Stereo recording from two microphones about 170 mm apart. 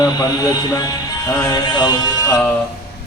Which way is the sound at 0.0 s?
20° left (ahead or behind).